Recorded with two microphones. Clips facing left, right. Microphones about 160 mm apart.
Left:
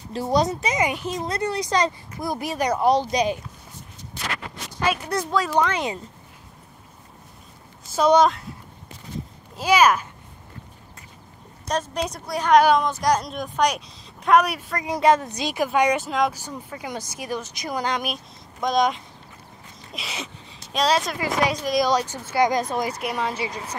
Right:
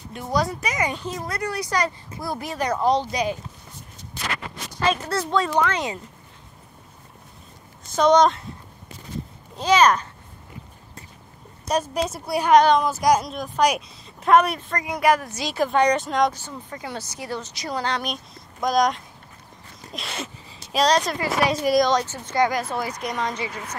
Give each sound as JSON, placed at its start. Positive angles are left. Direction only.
{"t": 0.1, "sound": "speech", "side_deg": 30}
{"t": 5.3, "sound": "speech", "side_deg": 5}
{"t": 5.6, "sound": "speech", "side_deg": 15}
{"t": 7.8, "sound": "speech", "side_deg": 5}
{"t": 9.6, "sound": "speech", "side_deg": 10}
{"t": 11.6, "sound": "a woman's voice", "side_deg": -10}
{"t": 14.8, "sound": "speech", "side_deg": 25}
{"t": 18.1, "sound": "speech", "side_deg": 0}
{"t": 21.2, "sound": "speech", "side_deg": 15}
{"t": 22.9, "sound": "speech", "side_deg": 5}